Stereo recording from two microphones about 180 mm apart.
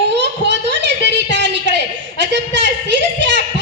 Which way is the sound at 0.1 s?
75° right (ahead or behind).